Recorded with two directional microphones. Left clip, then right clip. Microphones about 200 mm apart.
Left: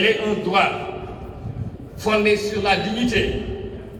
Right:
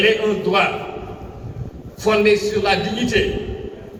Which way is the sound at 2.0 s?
25° right (ahead or behind).